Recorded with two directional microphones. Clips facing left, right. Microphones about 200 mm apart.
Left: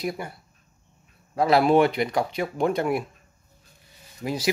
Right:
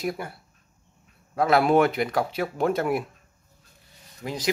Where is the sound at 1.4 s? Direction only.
Centre (ahead or behind).